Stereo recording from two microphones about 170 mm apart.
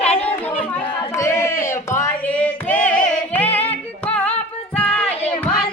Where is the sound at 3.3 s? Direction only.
10° left (ahead or behind).